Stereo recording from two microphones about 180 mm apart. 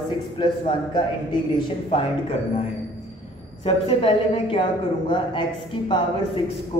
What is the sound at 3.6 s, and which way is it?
A man's voice, 30° left (ahead or behind).